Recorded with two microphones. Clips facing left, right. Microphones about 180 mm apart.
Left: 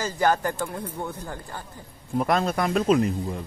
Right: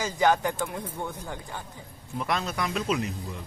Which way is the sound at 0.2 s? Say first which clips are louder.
Even; centre (ahead or behind).